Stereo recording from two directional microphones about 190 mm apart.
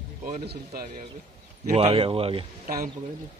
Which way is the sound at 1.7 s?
30° right (ahead or behind).